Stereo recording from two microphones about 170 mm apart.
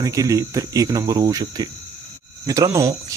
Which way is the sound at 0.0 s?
20° right (ahead or behind).